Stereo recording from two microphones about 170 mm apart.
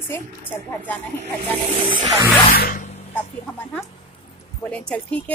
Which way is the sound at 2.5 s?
60° left (ahead or behind).